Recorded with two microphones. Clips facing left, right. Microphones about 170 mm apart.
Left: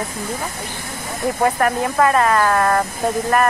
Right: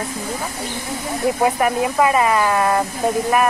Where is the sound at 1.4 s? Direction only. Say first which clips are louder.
Left 1 dB; 5° right (ahead or behind).